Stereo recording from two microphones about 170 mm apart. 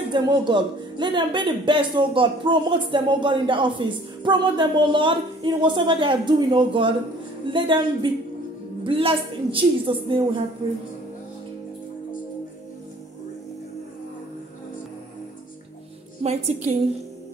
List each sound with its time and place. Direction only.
0.1 s a woman's voice: 25° right (ahead or behind)
16.2 s a woman's voice: 40° right (ahead or behind)